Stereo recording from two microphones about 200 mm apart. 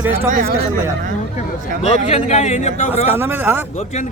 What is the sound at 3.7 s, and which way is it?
Speech, 35° left (ahead or behind).